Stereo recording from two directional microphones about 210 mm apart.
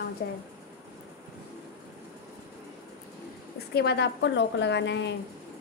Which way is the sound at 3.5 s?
50° left (ahead or behind).